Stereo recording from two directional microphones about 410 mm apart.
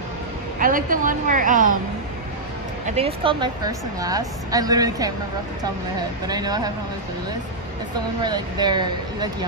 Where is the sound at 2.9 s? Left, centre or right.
Centre.